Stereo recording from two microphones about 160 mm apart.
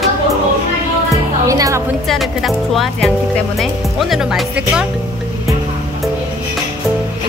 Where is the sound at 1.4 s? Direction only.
20° right (ahead or behind).